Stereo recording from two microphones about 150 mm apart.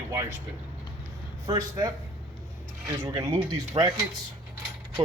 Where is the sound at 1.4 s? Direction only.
25° right (ahead or behind).